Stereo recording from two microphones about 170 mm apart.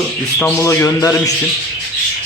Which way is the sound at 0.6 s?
15° left (ahead or behind).